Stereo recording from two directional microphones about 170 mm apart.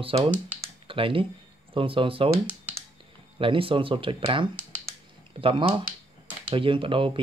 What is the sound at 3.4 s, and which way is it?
Speech, 30° right (ahead or behind).